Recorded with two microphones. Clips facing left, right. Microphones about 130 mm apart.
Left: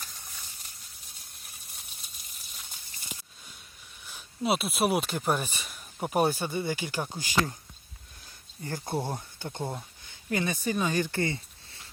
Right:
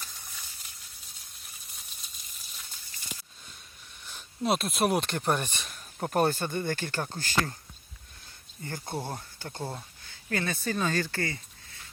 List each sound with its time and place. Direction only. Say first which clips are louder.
4.0 s speech: even; 5° left (ahead or behind)
8.6 s speech: left 3 dB; 20° left (ahead or behind)